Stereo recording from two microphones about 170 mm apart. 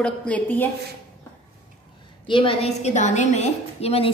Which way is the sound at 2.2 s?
30° left (ahead or behind).